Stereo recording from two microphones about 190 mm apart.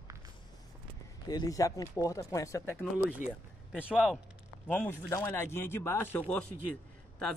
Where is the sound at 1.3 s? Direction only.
20° left (ahead or behind).